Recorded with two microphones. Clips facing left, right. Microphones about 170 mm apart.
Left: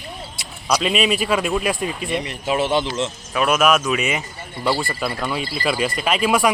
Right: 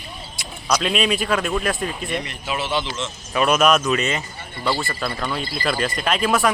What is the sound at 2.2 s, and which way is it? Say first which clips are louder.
Speech: left 6 dB; 40° left (ahead or behind).